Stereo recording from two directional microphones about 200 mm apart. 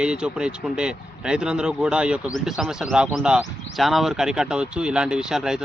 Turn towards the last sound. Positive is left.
turn(degrees=-5)  # may be behind; listen again after turning